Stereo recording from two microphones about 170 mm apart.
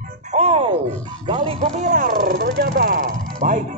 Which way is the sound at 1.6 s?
45° right (ahead or behind).